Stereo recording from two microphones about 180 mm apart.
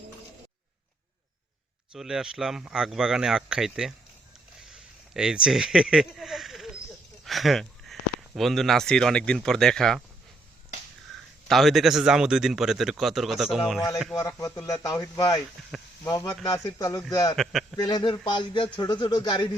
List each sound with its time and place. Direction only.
1.9 s speech: 5° right (ahead or behind)
4.7 s a sound: 5° right (ahead or behind)
8.4 s speech: centre (ahead or behind)
11.1 s a sound: centre (ahead or behind)
11.4 s speech: centre (ahead or behind)
14.2 s speech: 15° left (ahead or behind)
15.7 s a sound: centre (ahead or behind)
16.0 s speech: 20° left (ahead or behind)
17.3 s a man's voice: centre (ahead or behind)
17.8 s speech: 25° left (ahead or behind)